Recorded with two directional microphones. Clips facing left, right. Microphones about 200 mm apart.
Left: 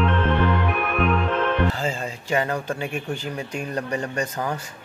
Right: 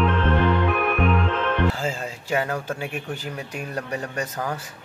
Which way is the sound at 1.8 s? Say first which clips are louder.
Left 1 dB; 5° right (ahead or behind).